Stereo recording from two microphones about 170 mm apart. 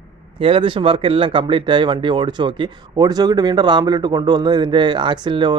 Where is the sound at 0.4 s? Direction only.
30° right (ahead or behind).